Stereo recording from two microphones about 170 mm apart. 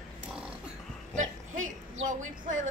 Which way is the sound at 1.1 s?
45° right (ahead or behind).